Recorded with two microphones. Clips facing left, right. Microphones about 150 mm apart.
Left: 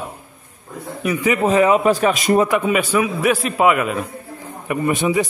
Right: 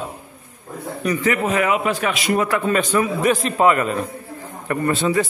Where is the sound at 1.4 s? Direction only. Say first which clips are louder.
Left 9 dB; 30° left (ahead or behind).